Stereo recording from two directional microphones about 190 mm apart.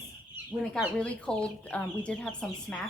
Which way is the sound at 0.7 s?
5° left (ahead or behind).